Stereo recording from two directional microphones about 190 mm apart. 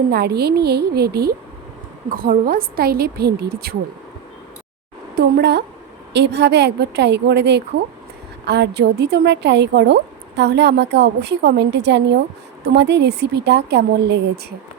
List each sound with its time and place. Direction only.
0.1 s a woman's voice: 60° right (ahead or behind)
5.1 s a woman's voice: 60° right (ahead or behind)